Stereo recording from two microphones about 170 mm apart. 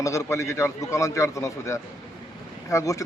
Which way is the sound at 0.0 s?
15° left (ahead or behind).